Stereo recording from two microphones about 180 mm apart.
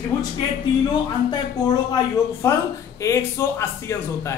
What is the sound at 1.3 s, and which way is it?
A man's voice, 20° left (ahead or behind).